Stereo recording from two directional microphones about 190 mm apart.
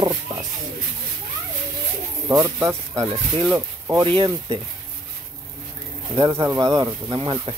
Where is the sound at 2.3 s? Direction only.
15° right (ahead or behind).